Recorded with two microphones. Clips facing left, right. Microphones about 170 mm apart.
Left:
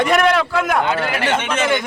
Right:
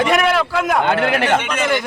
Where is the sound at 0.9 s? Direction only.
60° right (ahead or behind).